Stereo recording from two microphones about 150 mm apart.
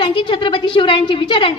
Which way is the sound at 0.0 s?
30° left (ahead or behind).